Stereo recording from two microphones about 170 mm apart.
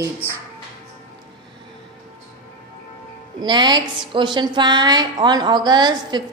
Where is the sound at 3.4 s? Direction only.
25° right (ahead or behind).